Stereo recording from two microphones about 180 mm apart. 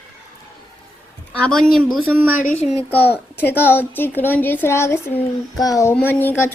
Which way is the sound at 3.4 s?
10° left (ahead or behind).